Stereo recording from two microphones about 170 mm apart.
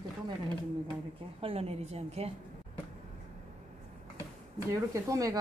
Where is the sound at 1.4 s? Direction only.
35° right (ahead or behind).